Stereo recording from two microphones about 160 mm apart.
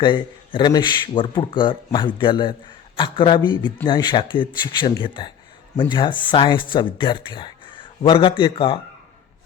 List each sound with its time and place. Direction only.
0.0 s speech: 30° left (ahead or behind)